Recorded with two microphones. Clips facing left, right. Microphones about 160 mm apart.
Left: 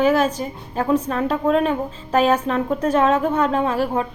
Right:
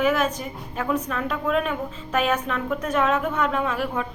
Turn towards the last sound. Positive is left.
turn(degrees=35)  # may be behind; listen again after turning